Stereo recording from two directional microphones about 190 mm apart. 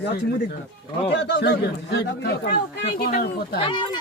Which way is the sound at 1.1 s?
60° left (ahead or behind).